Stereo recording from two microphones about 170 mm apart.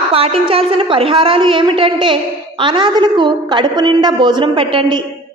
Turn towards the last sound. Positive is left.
turn(degrees=-30)  # may be behind; listen again after turning